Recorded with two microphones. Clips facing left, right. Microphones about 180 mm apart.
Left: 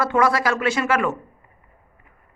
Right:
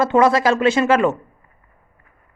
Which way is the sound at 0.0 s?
25° right (ahead or behind).